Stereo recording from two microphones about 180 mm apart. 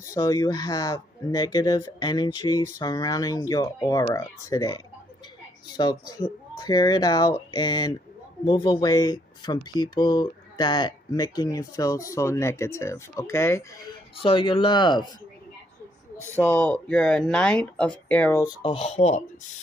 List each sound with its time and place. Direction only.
0.1 s speech: 20° left (ahead or behind)
14.2 s speech: 30° left (ahead or behind)
16.3 s speech: 10° left (ahead or behind)
18.6 s speech: 30° left (ahead or behind)